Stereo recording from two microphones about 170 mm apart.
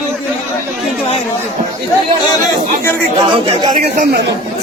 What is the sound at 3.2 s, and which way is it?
Speech, 30° right (ahead or behind).